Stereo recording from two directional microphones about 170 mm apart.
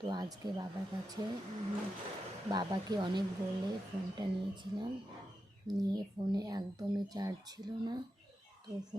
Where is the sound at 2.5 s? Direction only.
25° right (ahead or behind).